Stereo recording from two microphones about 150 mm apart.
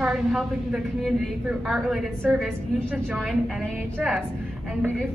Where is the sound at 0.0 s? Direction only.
5° right (ahead or behind).